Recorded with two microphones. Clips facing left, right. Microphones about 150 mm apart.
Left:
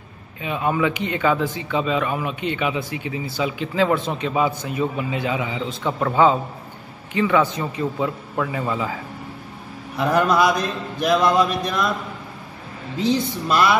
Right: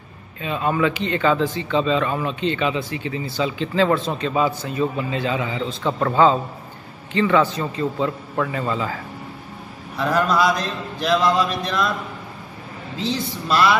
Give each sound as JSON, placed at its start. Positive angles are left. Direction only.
{"t": 0.4, "sound": "speech", "side_deg": 15}
{"t": 7.1, "sound": "speech", "side_deg": 10}
{"t": 9.9, "sound": "mantra", "side_deg": 20}
{"t": 13.0, "sound": "speech", "side_deg": 15}